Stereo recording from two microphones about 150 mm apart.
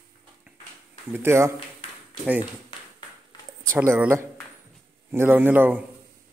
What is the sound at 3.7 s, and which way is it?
A man's voice, 15° right (ahead or behind).